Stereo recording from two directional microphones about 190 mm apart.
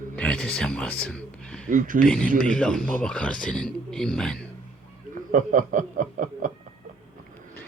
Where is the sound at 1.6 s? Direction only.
45° right (ahead or behind).